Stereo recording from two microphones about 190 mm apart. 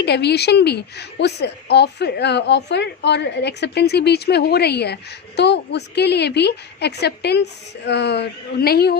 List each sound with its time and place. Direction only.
0.0 s a woman's voice: 60° left (ahead or behind)